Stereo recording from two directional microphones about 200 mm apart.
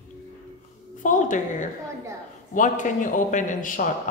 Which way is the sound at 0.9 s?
40° left (ahead or behind).